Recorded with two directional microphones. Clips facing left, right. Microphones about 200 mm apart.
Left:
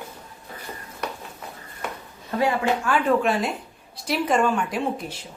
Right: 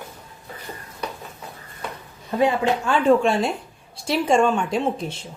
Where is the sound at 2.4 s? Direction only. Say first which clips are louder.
Right 3 dB; 25° right (ahead or behind).